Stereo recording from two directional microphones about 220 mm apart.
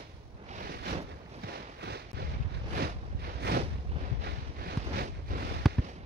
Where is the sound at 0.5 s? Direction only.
40° right (ahead or behind).